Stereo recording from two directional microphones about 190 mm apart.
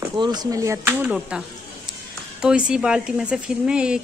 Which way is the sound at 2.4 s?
5° right (ahead or behind).